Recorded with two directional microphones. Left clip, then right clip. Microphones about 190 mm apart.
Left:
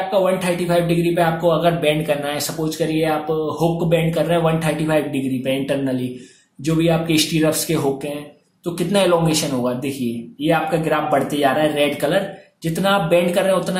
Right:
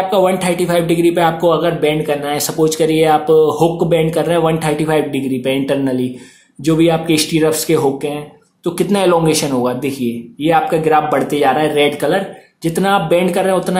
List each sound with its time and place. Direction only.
0.1 s speech: 30° right (ahead or behind)